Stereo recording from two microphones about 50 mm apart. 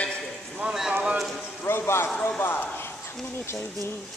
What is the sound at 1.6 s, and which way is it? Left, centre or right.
Music, left.